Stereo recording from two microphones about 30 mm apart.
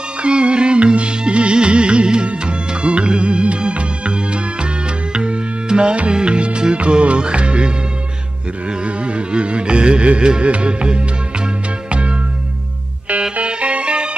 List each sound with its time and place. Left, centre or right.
0.2 s music: right
13.4 s music: right